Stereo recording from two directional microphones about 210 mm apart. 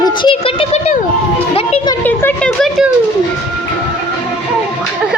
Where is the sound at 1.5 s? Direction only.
25° left (ahead or behind).